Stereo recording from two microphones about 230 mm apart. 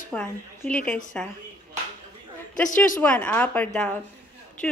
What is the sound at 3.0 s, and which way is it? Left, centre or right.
A woman's voice, centre.